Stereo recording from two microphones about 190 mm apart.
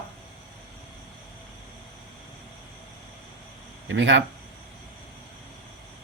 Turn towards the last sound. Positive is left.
turn(degrees=-75)  # may be behind; listen again after turning